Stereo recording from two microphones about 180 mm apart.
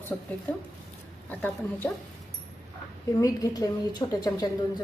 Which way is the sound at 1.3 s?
10° left (ahead or behind).